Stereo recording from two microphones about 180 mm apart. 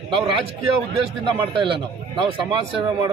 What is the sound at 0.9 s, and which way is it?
Speech, 30° right (ahead or behind).